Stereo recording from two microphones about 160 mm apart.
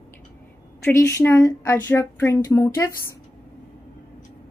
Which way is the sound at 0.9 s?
15° left (ahead or behind).